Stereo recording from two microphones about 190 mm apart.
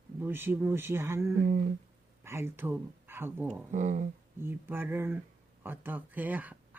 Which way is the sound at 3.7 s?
40° right (ahead or behind).